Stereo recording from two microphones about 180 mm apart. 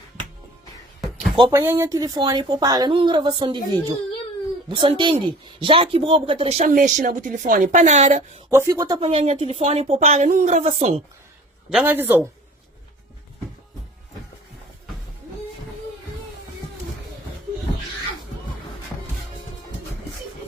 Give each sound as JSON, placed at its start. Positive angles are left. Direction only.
{"t": 1.4, "sound": "speech", "side_deg": -25}
{"t": 8.4, "sound": "speech", "side_deg": -15}
{"t": 9.0, "sound": "speech", "side_deg": -35}
{"t": 11.7, "sound": "speech", "side_deg": -10}